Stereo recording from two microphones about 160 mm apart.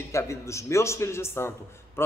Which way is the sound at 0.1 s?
20° left (ahead or behind).